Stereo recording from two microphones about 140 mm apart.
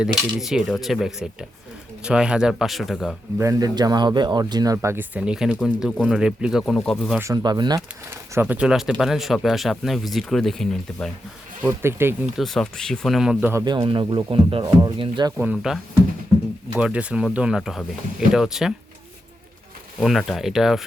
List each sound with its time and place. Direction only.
0.3 s speech: centre (ahead or behind)
3.3 s speech: 20° right (ahead or behind); by 7.2 s 5° left (ahead or behind)
7.3 s speech: 30° right (ahead or behind)
8.1 s speech: 15° right (ahead or behind); by 11.1 s 5° left (ahead or behind)
11.6 s speech: 20° right (ahead or behind)
12.4 s speech: centre (ahead or behind)
13.4 s speech: 15° right (ahead or behind)
13.8 s speech: 35° right (ahead or behind)
14.6 s speech: 30° right (ahead or behind)
15.4 s speech: 10° right (ahead or behind)
20.0 s speech: centre (ahead or behind)